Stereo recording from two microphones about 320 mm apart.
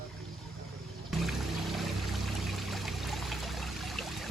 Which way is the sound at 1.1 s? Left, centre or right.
Centre.